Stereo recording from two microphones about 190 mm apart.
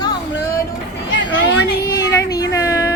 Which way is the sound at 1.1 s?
70° left (ahead or behind).